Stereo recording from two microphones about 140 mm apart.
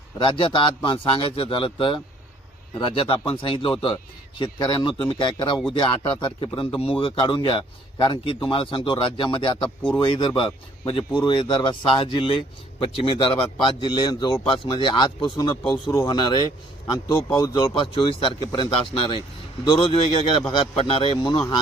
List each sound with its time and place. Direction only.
0.2 s speech: 40° left (ahead or behind)
9.6 s speech: 10° left (ahead or behind)
10.0 s speech: 35° left (ahead or behind)
13.6 s speech: 35° left (ahead or behind)